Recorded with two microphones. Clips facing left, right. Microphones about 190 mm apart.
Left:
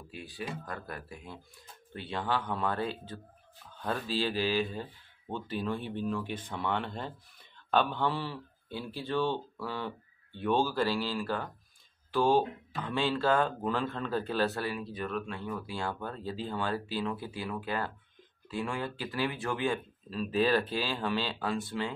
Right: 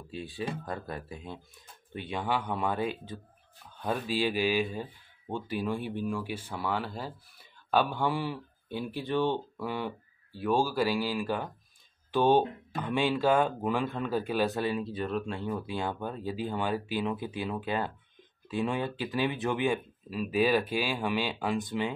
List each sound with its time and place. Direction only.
0.1 s speech: 25° right (ahead or behind)